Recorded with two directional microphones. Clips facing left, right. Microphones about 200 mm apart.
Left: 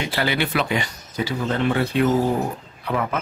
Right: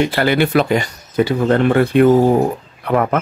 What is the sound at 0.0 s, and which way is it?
Speech, 55° right (ahead or behind).